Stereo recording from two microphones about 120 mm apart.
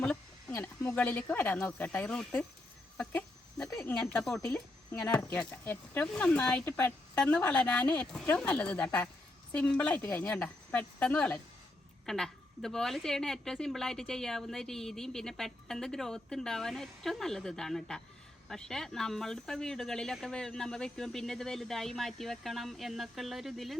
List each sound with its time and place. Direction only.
0.0 s a sound: 10° left (ahead or behind)
0.9 s speech: 10° left (ahead or behind)
3.8 s speech: 15° left (ahead or behind)
4.2 s a woman's voice: 5° left (ahead or behind)